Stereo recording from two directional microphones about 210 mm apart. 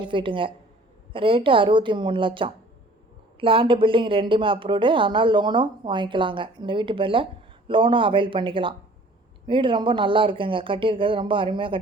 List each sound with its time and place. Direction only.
0.0 s a woman's voice: 25° right (ahead or behind)